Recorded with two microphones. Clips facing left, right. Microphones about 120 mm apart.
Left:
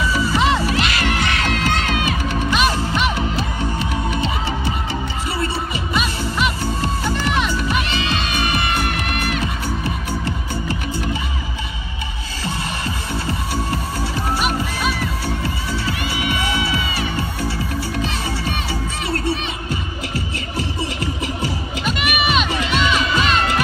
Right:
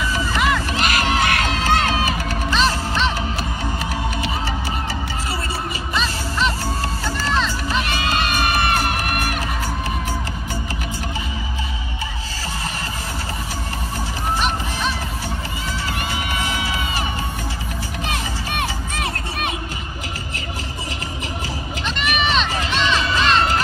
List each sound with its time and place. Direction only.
0.4 s music: 25° left (ahead or behind)
0.7 s music: 45° right (ahead or behind)
1.7 s crowd: 55° right (ahead or behind)
2.0 s music: 40° right (ahead or behind)
2.5 s music: 15° left (ahead or behind)
6.8 s music: 20° left (ahead or behind)
8.2 s music: 50° right (ahead or behind)
18.0 s music: 60° right (ahead or behind)
21.8 s music: 10° left (ahead or behind)
22.6 s music: 30° right (ahead or behind)